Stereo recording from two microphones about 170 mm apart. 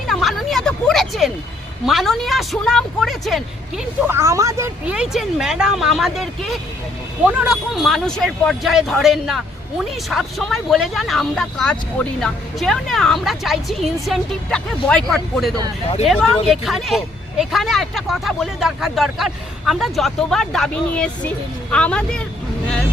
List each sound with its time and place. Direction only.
0.1 s vehicle: centre (ahead or behind)
1.9 s speech: centre (ahead or behind)
4.0 s speech: 15° right (ahead or behind)
4.9 s speech: 5° right (ahead or behind)